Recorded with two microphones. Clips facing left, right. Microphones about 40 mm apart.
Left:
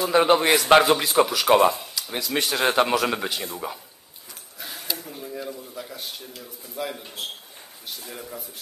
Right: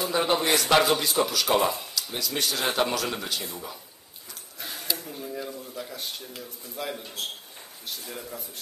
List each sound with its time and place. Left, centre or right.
0.1 s a man's voice: left; by 1.9 s centre
2.0 s a man's voice: centre
3.3 s a man's voice: centre
4.6 s a sound: centre
6.4 s a man's voice: centre